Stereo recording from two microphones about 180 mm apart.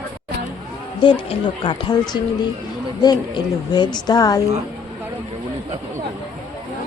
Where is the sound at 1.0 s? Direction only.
25° left (ahead or behind).